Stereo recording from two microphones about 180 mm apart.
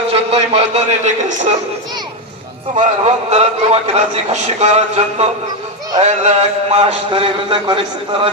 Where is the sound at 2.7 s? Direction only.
40° right (ahead or behind).